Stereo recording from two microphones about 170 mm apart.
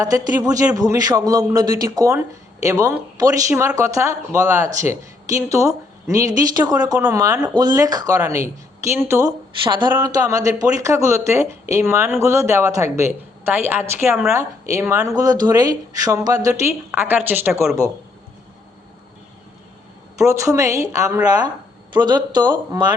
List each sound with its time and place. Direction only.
0.0 s a woman's voice: 20° right (ahead or behind)
9.6 s a woman's voice: 25° right (ahead or behind); by 17.5 s 10° right (ahead or behind)
20.1 s a woman's voice: 20° right (ahead or behind)